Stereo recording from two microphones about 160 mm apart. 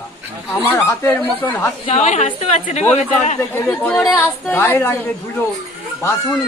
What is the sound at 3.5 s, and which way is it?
A woman's voice, 10° left (ahead or behind).